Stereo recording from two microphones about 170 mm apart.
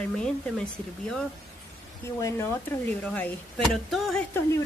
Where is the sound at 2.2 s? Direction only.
15° left (ahead or behind).